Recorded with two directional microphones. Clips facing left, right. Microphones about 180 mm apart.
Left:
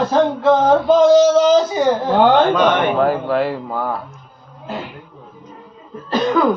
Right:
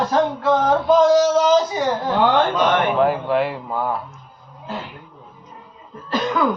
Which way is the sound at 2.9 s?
40° left (ahead or behind).